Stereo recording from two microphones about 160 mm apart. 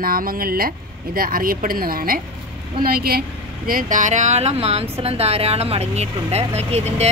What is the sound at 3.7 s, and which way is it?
Speech, 60° right (ahead or behind).